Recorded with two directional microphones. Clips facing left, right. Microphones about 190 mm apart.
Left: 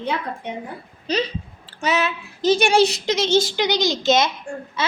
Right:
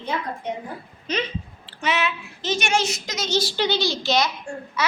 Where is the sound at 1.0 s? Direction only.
35° left (ahead or behind).